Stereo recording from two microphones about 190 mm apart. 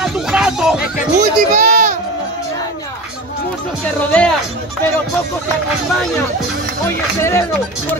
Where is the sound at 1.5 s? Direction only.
45° right (ahead or behind).